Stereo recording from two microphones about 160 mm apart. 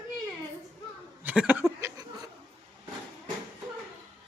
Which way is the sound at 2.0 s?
25° right (ahead or behind).